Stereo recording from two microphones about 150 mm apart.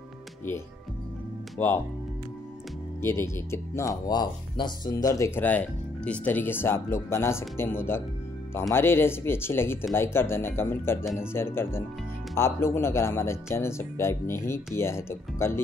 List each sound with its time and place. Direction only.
1.6 s speech: 10° left (ahead or behind)
3.0 s speech: 15° left (ahead or behind)
4.1 s speech: 30° left (ahead or behind)